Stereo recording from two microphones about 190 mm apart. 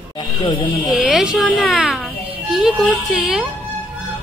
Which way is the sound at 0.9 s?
Centre (ahead or behind).